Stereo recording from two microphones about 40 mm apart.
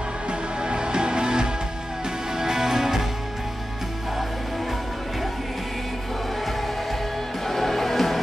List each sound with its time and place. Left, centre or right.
0.3 s music: right
7.4 s music: centre